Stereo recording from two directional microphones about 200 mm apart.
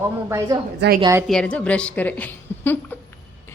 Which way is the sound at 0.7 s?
50° right (ahead or behind).